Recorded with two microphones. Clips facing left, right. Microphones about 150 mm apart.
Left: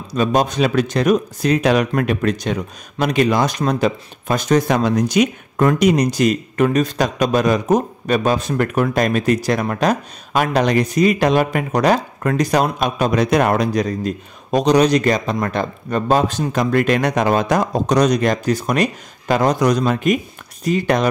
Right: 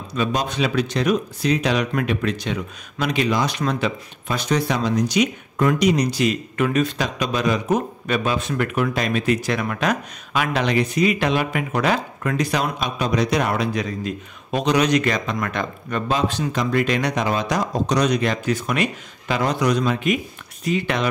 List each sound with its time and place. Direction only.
0.1 s speech: 45° left (ahead or behind)
16.2 s speech: 45° left (ahead or behind)